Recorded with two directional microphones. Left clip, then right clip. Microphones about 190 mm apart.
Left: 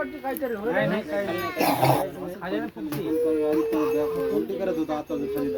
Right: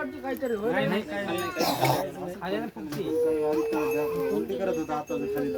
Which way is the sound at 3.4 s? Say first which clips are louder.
Left 3 dB; 5° right (ahead or behind).